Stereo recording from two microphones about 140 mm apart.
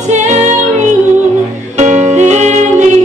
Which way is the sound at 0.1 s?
60° right (ahead or behind).